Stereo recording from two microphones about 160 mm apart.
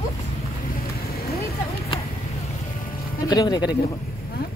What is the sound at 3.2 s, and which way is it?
Speech, 25° left (ahead or behind).